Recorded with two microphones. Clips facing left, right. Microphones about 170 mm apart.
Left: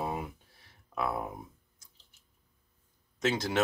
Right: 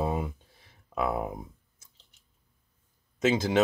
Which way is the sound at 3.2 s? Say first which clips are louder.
Right 5 dB; 20° right (ahead or behind).